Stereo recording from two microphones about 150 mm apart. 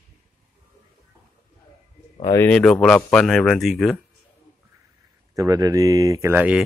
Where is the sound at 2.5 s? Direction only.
5° left (ahead or behind).